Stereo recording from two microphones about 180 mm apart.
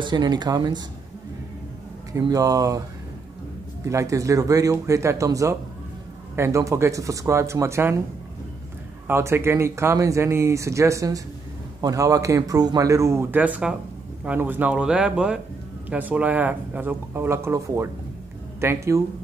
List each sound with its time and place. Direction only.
0.0 s speech: 25° right (ahead or behind)
2.1 s speech: 20° right (ahead or behind)
3.8 s speech: 15° right (ahead or behind)
9.0 s speech: 15° right (ahead or behind)